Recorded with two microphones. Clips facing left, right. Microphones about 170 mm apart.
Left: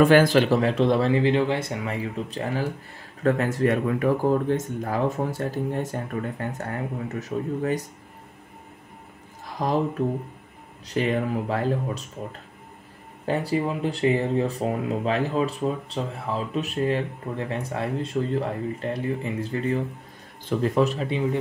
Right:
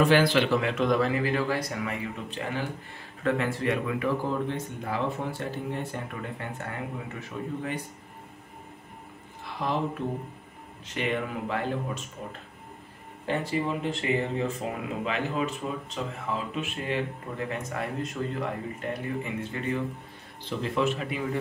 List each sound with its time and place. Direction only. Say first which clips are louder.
0.0 s speech: left 5 dB; 45° left (ahead or behind)
9.5 s speech: left 5 dB; 40° left (ahead or behind); by 21.4 s 25° left (ahead or behind)